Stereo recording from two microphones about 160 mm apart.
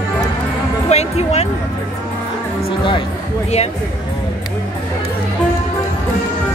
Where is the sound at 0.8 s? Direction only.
40° left (ahead or behind).